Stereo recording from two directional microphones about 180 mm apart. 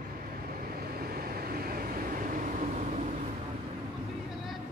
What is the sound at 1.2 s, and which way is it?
Vehicle, 55° right (ahead or behind).